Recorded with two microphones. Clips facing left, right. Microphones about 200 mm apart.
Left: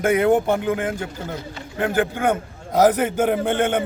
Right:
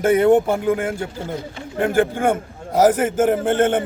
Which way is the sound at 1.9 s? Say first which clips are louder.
Right 2 dB; 45° right (ahead or behind).